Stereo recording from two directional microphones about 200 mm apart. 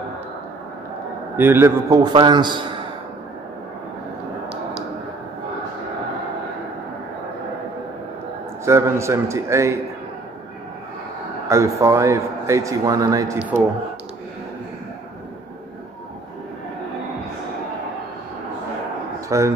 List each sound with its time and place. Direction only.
1.3 s a man's voice: 10° right (ahead or behind)
8.6 s a man's voice: 15° right (ahead or behind)
11.4 s a man's voice: 15° right (ahead or behind)
19.2 s a man's voice: 15° right (ahead or behind)